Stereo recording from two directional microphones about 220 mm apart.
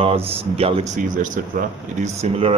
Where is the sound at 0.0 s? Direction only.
25° right (ahead or behind).